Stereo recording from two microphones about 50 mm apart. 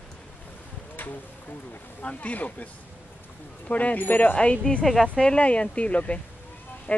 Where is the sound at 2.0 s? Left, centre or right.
Left.